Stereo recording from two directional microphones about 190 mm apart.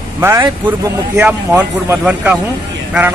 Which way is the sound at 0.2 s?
15° right (ahead or behind).